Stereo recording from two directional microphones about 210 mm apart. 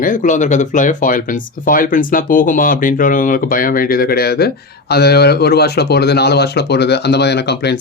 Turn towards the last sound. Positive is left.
turn(degrees=55)  # may be behind; listen again after turning